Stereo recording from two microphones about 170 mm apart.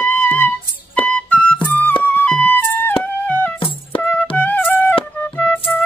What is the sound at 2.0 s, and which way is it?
Music, 10° left (ahead or behind).